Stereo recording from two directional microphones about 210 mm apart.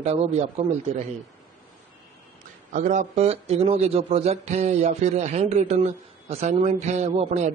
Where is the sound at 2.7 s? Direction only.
35° right (ahead or behind).